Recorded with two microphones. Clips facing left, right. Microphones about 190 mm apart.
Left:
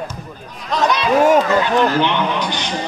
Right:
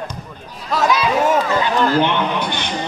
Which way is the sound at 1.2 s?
15° left (ahead or behind).